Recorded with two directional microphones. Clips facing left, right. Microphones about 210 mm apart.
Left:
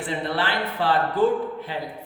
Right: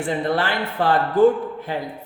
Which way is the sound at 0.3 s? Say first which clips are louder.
Right 4 dB; 45° right (ahead or behind).